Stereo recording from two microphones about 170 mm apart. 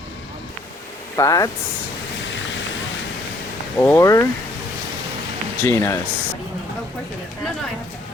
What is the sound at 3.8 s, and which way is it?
Speech, 15° left (ahead or behind).